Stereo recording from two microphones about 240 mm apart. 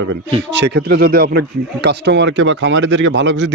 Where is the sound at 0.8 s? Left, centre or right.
Right.